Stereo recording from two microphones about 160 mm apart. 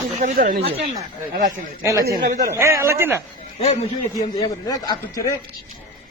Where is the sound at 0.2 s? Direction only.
50° right (ahead or behind).